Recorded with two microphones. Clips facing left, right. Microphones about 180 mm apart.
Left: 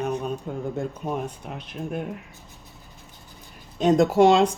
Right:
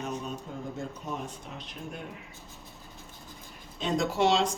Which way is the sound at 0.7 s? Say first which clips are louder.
Left 7 dB; 60° left (ahead or behind).